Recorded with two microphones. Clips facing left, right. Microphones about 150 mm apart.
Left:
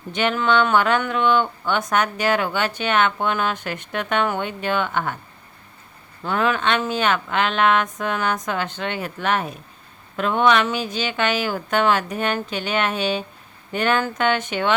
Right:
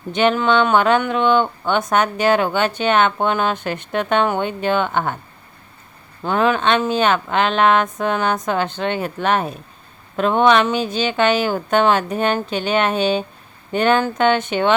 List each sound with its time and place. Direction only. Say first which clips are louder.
0.1 s speech: right 4 dB; 25° right (ahead or behind)
6.2 s speech: right 4 dB; 25° right (ahead or behind)